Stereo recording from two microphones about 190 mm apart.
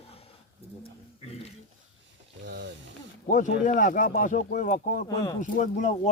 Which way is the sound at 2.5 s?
70° right (ahead or behind).